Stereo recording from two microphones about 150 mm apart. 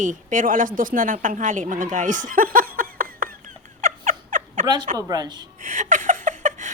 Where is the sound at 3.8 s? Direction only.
55° right (ahead or behind).